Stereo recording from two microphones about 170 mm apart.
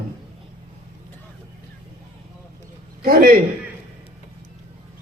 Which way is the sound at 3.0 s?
60° right (ahead or behind).